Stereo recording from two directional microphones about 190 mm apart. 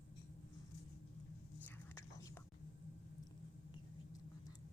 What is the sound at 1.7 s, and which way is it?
Whispering, 15° left (ahead or behind).